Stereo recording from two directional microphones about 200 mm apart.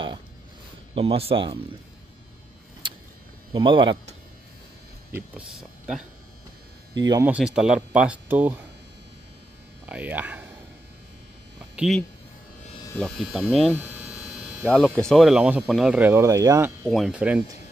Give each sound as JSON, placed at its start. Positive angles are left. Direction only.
{"t": 0.9, "sound": "speech", "side_deg": -30}
{"t": 3.5, "sound": "speech", "side_deg": -25}
{"t": 5.1, "sound": "speech", "side_deg": -5}
{"t": 7.1, "sound": "speech", "side_deg": -15}
{"t": 7.3, "sound": "speech", "side_deg": -5}
{"t": 9.8, "sound": "speech", "side_deg": -5}
{"t": 11.7, "sound": "speech", "side_deg": -5}
{"t": 16.8, "sound": "speech", "side_deg": 0}